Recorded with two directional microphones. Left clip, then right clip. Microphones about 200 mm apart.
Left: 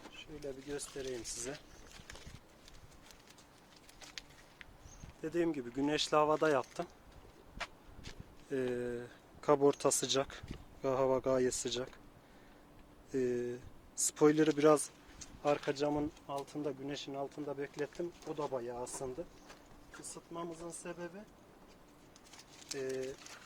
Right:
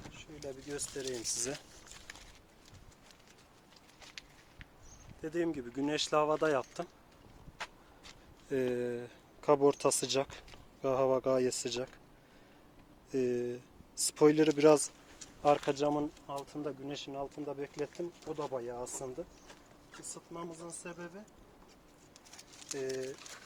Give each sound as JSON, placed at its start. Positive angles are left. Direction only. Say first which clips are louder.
{"t": 0.2, "sound": "speech", "louder": "even", "side_deg": -35}
{"t": 5.2, "sound": "speech", "louder": "even", "side_deg": 0}
{"t": 7.6, "sound": "a sound", "louder": "even", "side_deg": -15}
{"t": 8.4, "sound": "speech", "louder": "right 3 dB", "side_deg": -20}
{"t": 9.4, "sound": "speech", "louder": "right 2 dB", "side_deg": -5}
{"t": 13.1, "sound": "speech", "louder": "right 2 dB", "side_deg": -10}
{"t": 15.4, "sound": "speech", "louder": "right 4 dB", "side_deg": -30}
{"t": 16.4, "sound": "speech", "louder": "left 1 dB", "side_deg": 0}
{"t": 20.3, "sound": "speech", "louder": "left 1 dB", "side_deg": -25}
{"t": 22.7, "sound": "speech", "louder": "right 1 dB", "side_deg": -35}